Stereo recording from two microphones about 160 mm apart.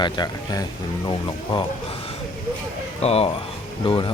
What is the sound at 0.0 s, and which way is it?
Speech, 25° left (ahead or behind).